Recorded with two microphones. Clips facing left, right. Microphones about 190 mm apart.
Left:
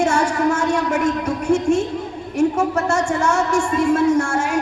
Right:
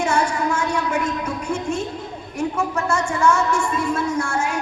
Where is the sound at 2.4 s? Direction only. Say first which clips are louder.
Left 5 dB; 45° left (ahead or behind).